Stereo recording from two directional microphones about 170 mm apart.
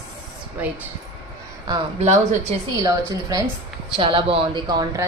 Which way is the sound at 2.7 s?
20° right (ahead or behind).